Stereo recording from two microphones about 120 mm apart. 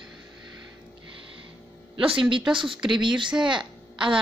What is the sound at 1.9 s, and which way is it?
A woman's voice, 50° right (ahead or behind).